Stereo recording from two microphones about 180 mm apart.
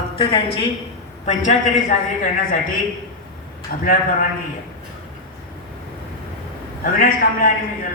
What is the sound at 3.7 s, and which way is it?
Speech, 50° left (ahead or behind).